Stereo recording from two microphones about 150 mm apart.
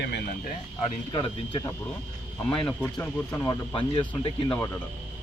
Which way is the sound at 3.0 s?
15° left (ahead or behind).